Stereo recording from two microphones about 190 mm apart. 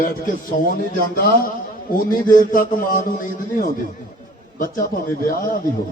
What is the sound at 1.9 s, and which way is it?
A man's voice, 45° left (ahead or behind).